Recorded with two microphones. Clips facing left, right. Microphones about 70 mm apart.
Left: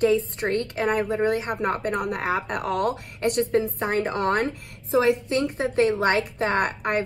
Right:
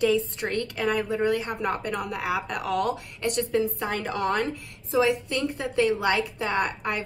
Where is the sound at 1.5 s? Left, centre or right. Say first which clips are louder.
Left 3 dB; left.